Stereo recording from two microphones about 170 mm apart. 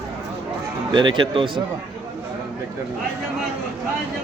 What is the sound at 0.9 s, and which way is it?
Speech, 25° right (ahead or behind).